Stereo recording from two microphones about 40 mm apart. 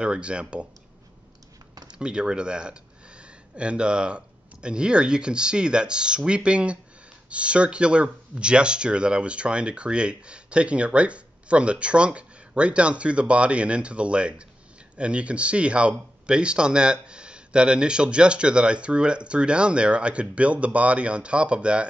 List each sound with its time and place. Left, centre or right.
0.0 s speech: right
1.9 s speech: right